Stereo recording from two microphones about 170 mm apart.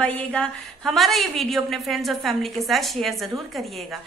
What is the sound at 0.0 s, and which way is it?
A woman's voice, 5° left (ahead or behind).